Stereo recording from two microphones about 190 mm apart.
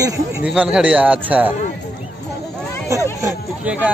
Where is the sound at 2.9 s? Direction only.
15° right (ahead or behind).